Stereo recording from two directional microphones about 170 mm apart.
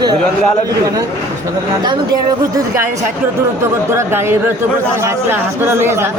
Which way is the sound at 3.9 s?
15° right (ahead or behind).